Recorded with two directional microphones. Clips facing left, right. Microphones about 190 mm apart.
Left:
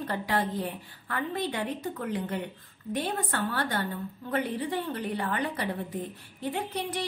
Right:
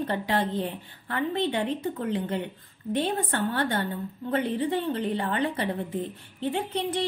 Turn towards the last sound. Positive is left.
turn(degrees=-25)  # may be behind; listen again after turning